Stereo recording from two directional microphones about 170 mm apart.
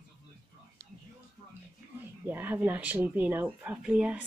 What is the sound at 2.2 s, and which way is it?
Speech, 10° right (ahead or behind).